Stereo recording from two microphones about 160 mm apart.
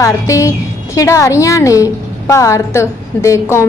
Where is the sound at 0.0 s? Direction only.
20° left (ahead or behind).